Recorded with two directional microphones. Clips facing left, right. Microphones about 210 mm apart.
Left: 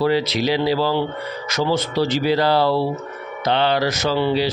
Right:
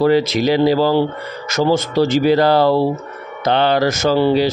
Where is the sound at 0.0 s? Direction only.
45° right (ahead or behind).